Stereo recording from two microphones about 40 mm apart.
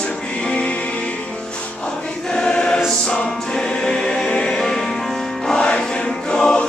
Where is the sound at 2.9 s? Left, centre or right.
Centre.